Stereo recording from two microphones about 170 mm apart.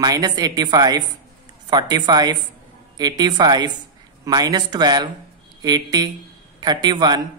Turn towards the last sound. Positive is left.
turn(degrees=-25)  # may be behind; listen again after turning